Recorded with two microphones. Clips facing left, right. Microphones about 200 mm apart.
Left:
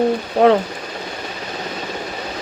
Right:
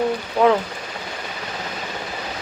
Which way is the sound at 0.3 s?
45° left (ahead or behind).